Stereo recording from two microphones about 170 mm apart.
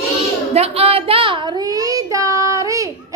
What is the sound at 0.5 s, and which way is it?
Child singing, 35° right (ahead or behind).